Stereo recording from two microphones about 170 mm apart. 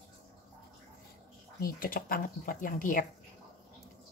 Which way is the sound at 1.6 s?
55° left (ahead or behind).